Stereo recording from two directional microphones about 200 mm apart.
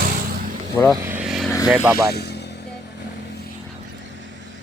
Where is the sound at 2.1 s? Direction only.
55° left (ahead or behind).